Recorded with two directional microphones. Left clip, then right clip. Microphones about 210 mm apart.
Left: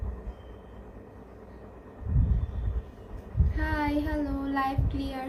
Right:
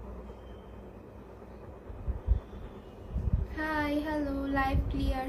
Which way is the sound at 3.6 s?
15° right (ahead or behind).